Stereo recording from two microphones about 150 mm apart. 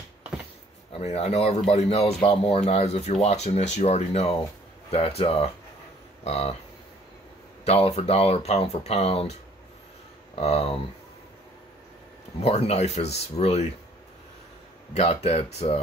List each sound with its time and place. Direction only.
0.9 s speech: 45° left (ahead or behind)
7.6 s speech: 40° left (ahead or behind)
10.3 s speech: 40° left (ahead or behind)
12.4 s speech: 45° left (ahead or behind)
15.0 s speech: 45° left (ahead or behind)